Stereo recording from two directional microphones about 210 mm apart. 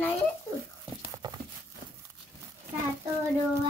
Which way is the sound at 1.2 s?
20° right (ahead or behind).